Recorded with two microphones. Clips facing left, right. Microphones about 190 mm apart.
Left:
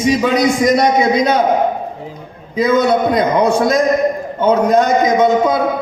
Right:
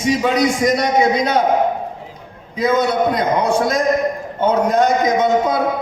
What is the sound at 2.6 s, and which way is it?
A man's voice, 90° left.